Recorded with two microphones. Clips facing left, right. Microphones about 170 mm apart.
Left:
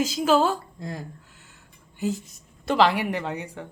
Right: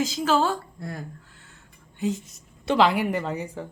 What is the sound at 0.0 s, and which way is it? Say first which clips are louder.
Speech: left 2 dB; 10° left (ahead or behind).